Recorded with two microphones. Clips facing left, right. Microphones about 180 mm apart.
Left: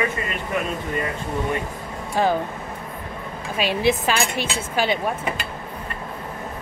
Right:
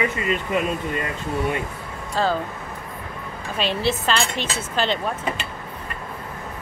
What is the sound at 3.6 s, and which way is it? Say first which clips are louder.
Speech: left 3 dB; 10° left (ahead or behind).